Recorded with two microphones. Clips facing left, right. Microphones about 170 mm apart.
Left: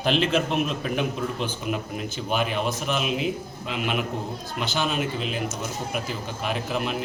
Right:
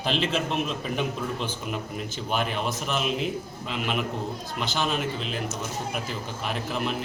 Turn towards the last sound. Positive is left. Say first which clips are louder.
# left 2 dB
turn(degrees=0)  # may be behind; listen again after turning